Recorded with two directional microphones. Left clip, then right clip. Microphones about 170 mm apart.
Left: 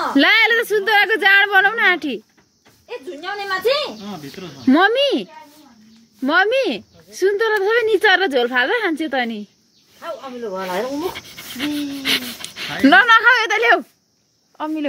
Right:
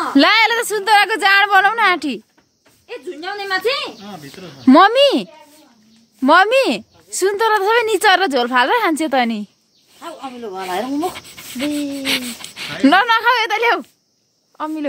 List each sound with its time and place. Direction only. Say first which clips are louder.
0.1 s a woman's voice: right 1 dB; 35° right (ahead or behind)
4.6 s a woman's voice: right 5 dB; 40° right (ahead or behind)
11.0 s speech: right 3 dB; 20° right (ahead or behind)